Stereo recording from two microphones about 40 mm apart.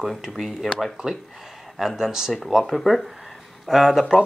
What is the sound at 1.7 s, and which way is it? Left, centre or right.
A man's voice, centre.